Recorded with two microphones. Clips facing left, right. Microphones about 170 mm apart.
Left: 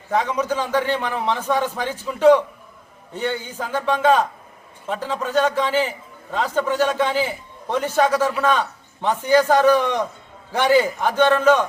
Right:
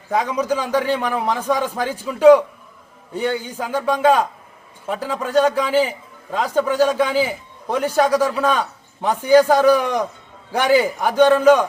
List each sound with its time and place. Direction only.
0.1 s a man's voice: 10° right (ahead or behind)